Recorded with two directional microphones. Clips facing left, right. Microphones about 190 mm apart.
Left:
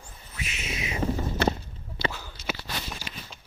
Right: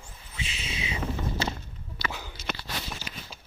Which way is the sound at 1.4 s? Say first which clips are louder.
Left 9 dB; 60° left (ahead or behind).